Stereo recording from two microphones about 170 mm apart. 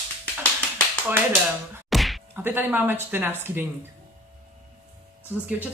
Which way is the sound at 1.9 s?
Centre (ahead or behind).